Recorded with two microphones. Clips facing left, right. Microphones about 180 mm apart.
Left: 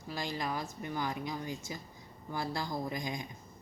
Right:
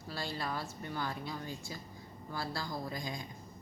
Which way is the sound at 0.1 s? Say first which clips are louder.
Left 2 dB; 15° left (ahead or behind).